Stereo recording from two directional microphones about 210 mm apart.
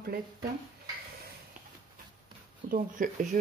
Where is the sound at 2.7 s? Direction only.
40° right (ahead or behind).